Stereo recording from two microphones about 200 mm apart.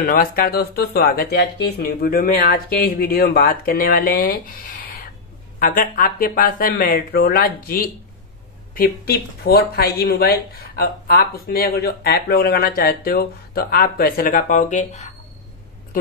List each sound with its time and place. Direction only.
0.0 s speech: 45° left (ahead or behind)